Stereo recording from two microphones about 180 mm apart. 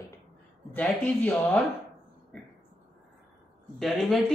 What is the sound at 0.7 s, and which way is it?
Speech, 10° left (ahead or behind).